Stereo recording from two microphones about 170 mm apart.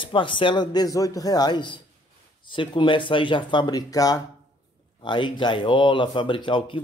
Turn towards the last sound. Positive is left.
turn(degrees=30)  # may be behind; listen again after turning